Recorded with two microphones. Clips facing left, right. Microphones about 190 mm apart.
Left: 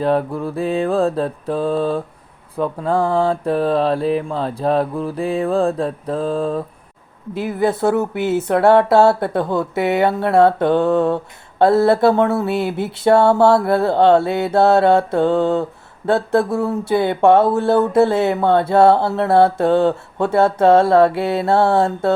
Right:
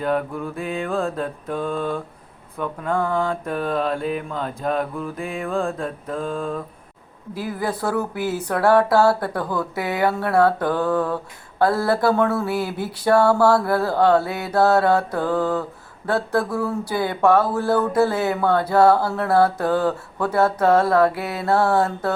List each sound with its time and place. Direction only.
0.0 s mantra: 35° left (ahead or behind)
7.3 s speech: 25° left (ahead or behind)